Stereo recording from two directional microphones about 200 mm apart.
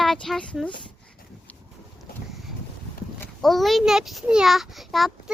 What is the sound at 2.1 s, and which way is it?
Boat, 50° left (ahead or behind).